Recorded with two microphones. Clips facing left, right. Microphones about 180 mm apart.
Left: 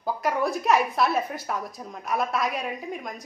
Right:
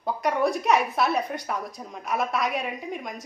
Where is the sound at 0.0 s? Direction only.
Centre (ahead or behind).